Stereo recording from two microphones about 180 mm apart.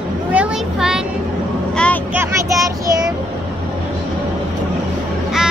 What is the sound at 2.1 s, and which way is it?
Child singing, 15° right (ahead or behind).